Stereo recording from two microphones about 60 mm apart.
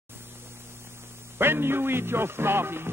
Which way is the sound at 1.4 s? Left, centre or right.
Right.